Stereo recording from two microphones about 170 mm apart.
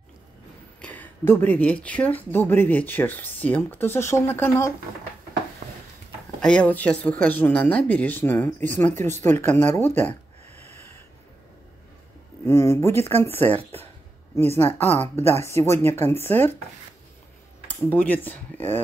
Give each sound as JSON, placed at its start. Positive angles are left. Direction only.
{"t": 0.7, "sound": "speech", "side_deg": 10}
{"t": 5.6, "sound": "a sound", "side_deg": -40}
{"t": 6.4, "sound": "speech", "side_deg": 5}
{"t": 12.4, "sound": "speech", "side_deg": 15}
{"t": 17.8, "sound": "speech", "side_deg": 10}